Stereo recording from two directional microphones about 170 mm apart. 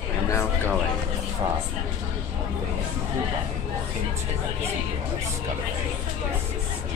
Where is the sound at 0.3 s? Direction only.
15° left (ahead or behind).